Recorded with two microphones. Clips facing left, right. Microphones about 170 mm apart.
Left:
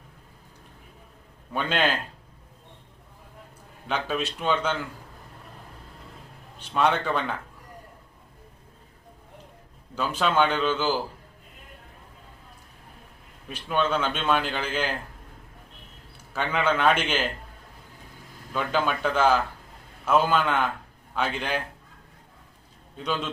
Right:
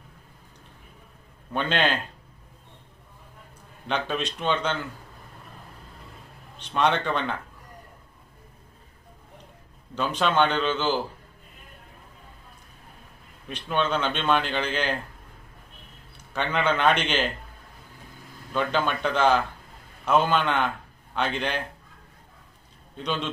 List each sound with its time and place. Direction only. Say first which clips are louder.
1.5 s a man's voice: right 1 dB; 5° left (ahead or behind)
3.8 s a man's voice: even; 5° left (ahead or behind)
6.6 s a man's voice: even; 5° left (ahead or behind)
9.9 s a man's voice: even; 5° left (ahead or behind)
13.5 s a man's voice: even; 5° left (ahead or behind)
16.3 s a man's voice: even; 5° left (ahead or behind)
18.5 s a man's voice: right 1 dB; 5° left (ahead or behind)
23.0 s a man's voice: even; 5° left (ahead or behind)